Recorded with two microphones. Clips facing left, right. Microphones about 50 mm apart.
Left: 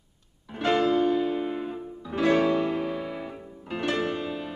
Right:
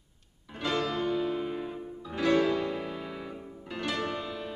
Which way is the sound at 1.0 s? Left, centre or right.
Centre.